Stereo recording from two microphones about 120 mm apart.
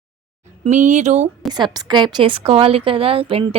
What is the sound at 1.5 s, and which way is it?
A woman's voice, 35° right (ahead or behind).